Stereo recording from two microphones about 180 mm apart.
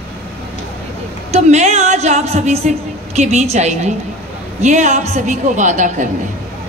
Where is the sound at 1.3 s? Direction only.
40° right (ahead or behind).